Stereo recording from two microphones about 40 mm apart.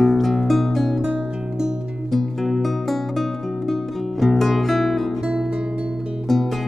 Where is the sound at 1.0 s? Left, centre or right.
Centre.